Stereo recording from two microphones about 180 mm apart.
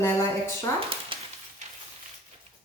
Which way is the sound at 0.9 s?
30° right (ahead or behind).